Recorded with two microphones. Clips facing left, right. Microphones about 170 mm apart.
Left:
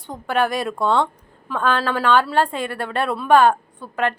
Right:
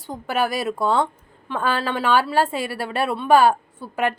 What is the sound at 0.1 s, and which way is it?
A woman's voice, 5° right (ahead or behind).